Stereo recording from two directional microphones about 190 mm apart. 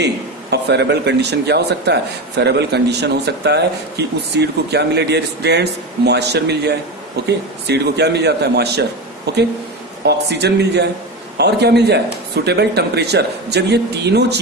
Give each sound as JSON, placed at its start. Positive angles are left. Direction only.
{"t": 0.0, "sound": "a man's voice", "side_deg": -60}